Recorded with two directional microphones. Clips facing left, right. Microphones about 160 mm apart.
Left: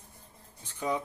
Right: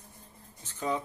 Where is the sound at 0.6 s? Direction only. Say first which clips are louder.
Even; 10° left (ahead or behind).